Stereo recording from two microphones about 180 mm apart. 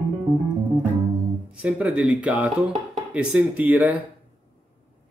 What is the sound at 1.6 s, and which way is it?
Speech, 5° right (ahead or behind).